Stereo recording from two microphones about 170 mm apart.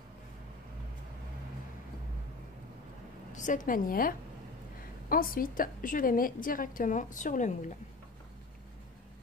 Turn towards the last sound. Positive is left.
turn(degrees=45)  # may be behind; listen again after turning